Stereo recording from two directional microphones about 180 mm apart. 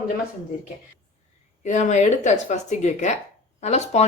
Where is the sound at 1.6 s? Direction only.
40° left (ahead or behind).